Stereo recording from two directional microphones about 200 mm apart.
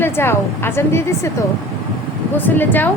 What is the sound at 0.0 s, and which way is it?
A woman's voice, 10° left (ahead or behind).